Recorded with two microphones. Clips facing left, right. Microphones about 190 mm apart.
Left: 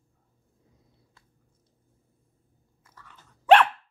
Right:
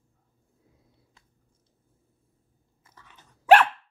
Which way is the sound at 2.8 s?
20° right (ahead or behind).